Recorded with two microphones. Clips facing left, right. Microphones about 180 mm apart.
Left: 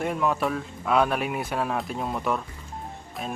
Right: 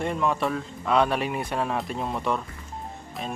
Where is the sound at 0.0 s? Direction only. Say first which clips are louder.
Even; 5° left (ahead or behind).